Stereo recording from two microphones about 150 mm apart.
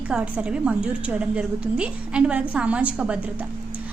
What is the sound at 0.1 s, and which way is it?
A woman's voice, 5° right (ahead or behind).